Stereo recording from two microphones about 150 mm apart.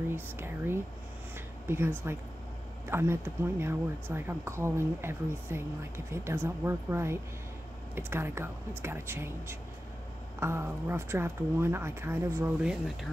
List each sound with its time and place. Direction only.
0.1 s speech: 15° right (ahead or behind)